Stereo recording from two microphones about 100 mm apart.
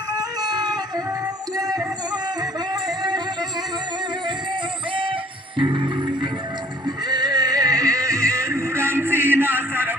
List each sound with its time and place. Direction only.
0.2 s music: 40° right (ahead or behind)
5.5 s music: 55° right (ahead or behind)
6.8 s music: 45° right (ahead or behind); by 9.9 s 20° right (ahead or behind)